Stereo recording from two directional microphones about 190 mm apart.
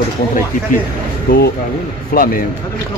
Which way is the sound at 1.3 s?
50° left (ahead or behind).